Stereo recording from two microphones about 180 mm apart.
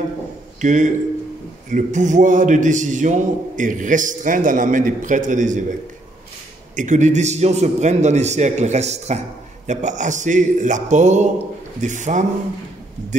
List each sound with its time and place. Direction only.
0.6 s a man's voice: 45° right (ahead or behind)
6.7 s a man's voice: 45° right (ahead or behind)